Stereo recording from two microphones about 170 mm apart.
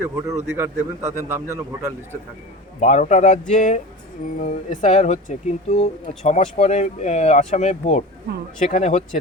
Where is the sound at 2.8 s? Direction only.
45° left (ahead or behind).